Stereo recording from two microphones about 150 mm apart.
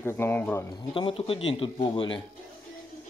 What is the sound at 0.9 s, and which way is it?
Speech, 35° left (ahead or behind).